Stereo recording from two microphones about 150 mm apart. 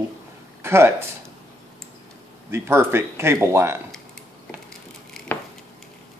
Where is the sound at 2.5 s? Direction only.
15° right (ahead or behind).